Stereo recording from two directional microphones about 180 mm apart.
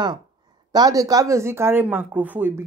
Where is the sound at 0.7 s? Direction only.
20° right (ahead or behind).